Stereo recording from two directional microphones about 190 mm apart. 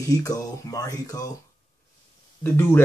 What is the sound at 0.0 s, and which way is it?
Speech, 15° left (ahead or behind).